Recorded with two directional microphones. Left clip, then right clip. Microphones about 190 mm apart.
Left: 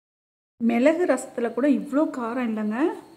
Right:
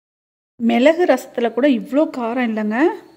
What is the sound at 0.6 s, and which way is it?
A woman's voice, 15° right (ahead or behind).